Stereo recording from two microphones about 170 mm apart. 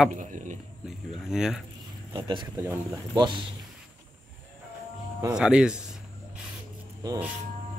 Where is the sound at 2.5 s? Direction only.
15° right (ahead or behind).